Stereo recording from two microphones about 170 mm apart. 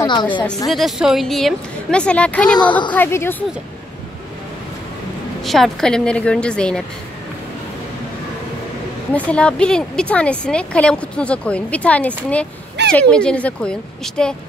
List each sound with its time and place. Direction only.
0.0 s a woman's voice: 25° left (ahead or behind)
0.7 s a woman's voice: centre (ahead or behind)
2.6 s a woman's voice: 25° left (ahead or behind)
2.9 s a woman's voice: 15° left (ahead or behind)
5.4 s a woman's voice: centre (ahead or behind)
9.1 s a woman's voice: 5° left (ahead or behind)
12.8 s a sound: 90° right
13.1 s a woman's voice: 5° left (ahead or behind)